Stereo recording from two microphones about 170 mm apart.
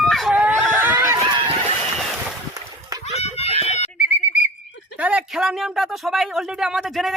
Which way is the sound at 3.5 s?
40° left (ahead or behind).